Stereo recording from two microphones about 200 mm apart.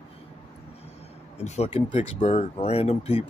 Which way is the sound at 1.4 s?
35° left (ahead or behind).